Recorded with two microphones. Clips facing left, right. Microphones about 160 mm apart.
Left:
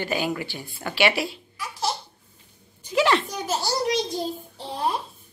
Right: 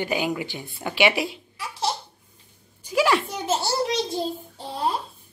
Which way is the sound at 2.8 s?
10° right (ahead or behind).